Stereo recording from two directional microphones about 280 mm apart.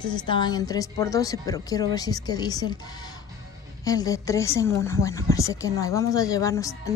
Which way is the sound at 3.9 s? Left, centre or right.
Centre.